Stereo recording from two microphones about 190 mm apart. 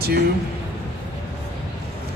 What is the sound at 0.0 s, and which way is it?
Speech, 55° right (ahead or behind).